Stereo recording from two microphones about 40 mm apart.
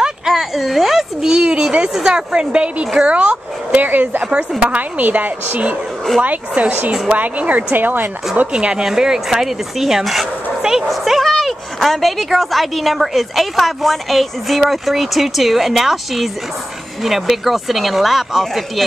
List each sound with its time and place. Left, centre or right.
0.0 s a sound: centre
1.3 s a woman's voice: right
4.3 s speech: right
7.7 s speech: right
8.5 s a woman's voice: right
8.8 s speech: centre
10.6 s bow-wow: centre
10.9 s speech: centre